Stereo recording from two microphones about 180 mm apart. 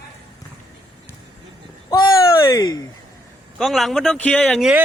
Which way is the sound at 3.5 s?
Centre (ahead or behind).